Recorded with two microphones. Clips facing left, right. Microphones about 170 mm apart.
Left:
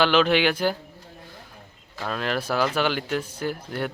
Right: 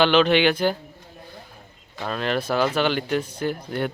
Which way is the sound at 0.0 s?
5° left (ahead or behind).